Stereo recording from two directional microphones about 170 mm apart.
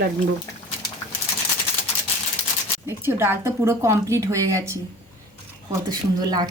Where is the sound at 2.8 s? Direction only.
15° right (ahead or behind).